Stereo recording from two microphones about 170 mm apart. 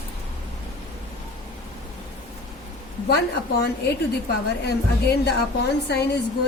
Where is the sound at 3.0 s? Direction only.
75° left (ahead or behind).